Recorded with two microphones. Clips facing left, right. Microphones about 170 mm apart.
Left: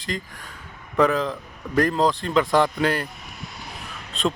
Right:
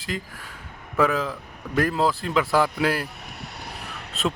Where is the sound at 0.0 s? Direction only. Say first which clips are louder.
Left 1 dB; 5° right (ahead or behind).